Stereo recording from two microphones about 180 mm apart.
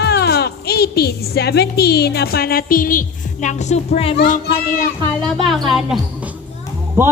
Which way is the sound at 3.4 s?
40° left (ahead or behind).